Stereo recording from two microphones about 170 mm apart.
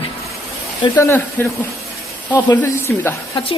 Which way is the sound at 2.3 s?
25° left (ahead or behind).